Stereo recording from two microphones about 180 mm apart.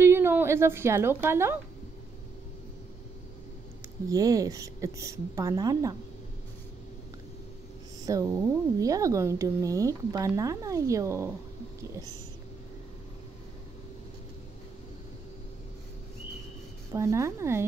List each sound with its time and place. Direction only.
0.0 s a woman's voice: 15° right (ahead or behind)
4.1 s a woman's voice: 20° right (ahead or behind)
8.0 s speech: 15° right (ahead or behind)
16.9 s speech: 15° right (ahead or behind)